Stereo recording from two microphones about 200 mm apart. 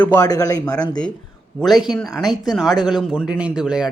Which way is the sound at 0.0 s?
10° left (ahead or behind).